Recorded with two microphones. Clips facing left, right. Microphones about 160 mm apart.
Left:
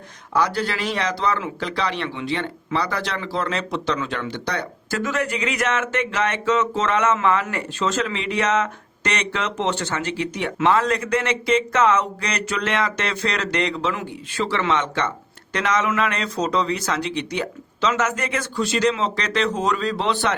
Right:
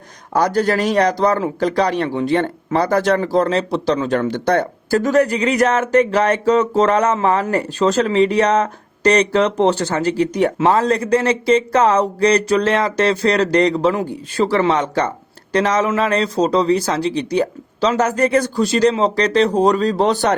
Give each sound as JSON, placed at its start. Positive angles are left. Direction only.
{"t": 0.3, "sound": "speech", "side_deg": -45}
{"t": 4.9, "sound": "speech", "side_deg": -40}